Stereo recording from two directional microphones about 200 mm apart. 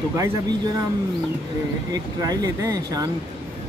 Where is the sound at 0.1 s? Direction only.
15° right (ahead or behind).